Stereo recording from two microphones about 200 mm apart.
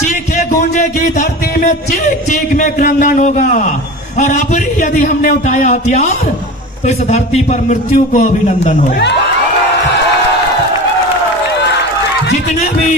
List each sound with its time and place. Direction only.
0.0 s music: 35° left (ahead or behind)
4.2 s a man's voice: 40° left (ahead or behind)